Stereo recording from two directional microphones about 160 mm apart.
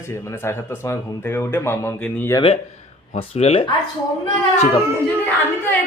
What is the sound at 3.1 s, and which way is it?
Speech, 40° left (ahead or behind).